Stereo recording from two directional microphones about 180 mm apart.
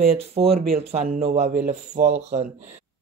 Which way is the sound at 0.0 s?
35° right (ahead or behind).